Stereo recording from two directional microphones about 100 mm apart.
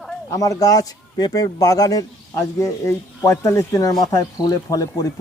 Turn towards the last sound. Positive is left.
turn(degrees=35)  # may be behind; listen again after turning